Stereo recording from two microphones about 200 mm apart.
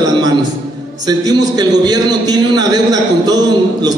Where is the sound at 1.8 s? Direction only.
20° right (ahead or behind).